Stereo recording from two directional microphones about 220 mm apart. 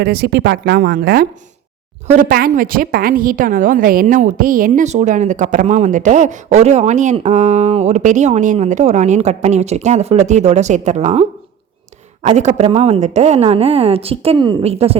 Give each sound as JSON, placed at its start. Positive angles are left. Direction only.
{"t": 0.0, "sound": "a woman's voice", "side_deg": -45}